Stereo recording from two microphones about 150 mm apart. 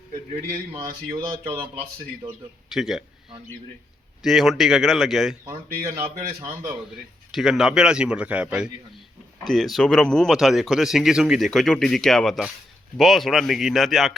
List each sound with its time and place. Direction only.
0.7 s speech: 40° right (ahead or behind)
1.1 s speech: 15° right (ahead or behind)
2.2 s speech: 35° right (ahead or behind)
2.6 s a man's voice: centre (ahead or behind)
4.2 s speech: centre (ahead or behind)
6.4 s speech: 15° right (ahead or behind)
7.3 s speech: centre (ahead or behind)